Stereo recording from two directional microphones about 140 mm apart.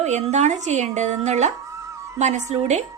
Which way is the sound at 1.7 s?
20° right (ahead or behind).